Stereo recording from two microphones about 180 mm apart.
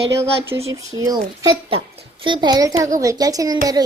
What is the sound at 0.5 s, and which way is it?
Speech, 10° right (ahead or behind).